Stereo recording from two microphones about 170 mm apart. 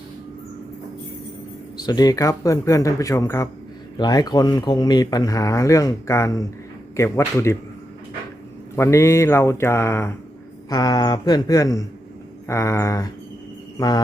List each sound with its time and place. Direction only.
1.8 s speech: 25° left (ahead or behind)
8.7 s speech: 15° left (ahead or behind)
13.7 s mantra: 25° left (ahead or behind)